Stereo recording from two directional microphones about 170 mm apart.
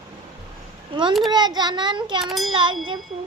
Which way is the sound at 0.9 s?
30° right (ahead or behind).